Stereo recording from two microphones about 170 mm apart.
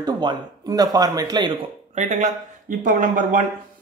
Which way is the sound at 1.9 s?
45° right (ahead or behind).